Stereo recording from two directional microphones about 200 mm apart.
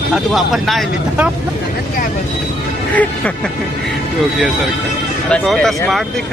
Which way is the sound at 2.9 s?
5° left (ahead or behind).